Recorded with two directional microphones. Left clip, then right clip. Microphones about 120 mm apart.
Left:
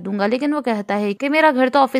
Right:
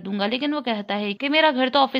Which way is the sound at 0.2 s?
55° left (ahead or behind).